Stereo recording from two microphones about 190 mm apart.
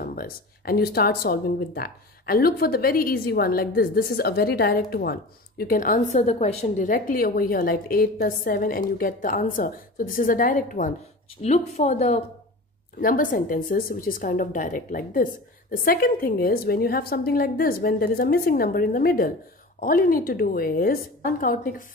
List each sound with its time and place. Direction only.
0.0 s a woman's voice: 50° left (ahead or behind)